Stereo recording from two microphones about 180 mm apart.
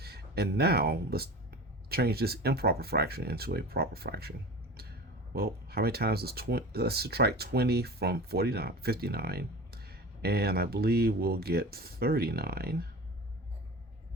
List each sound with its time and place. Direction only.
0.0 s speech: 60° right (ahead or behind)